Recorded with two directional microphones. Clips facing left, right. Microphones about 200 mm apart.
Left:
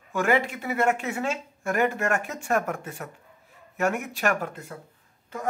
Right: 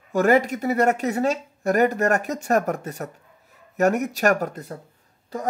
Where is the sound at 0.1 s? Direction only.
40° right (ahead or behind).